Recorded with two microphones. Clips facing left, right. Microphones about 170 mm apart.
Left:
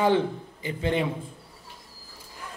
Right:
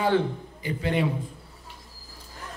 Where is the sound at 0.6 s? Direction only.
25° left (ahead or behind).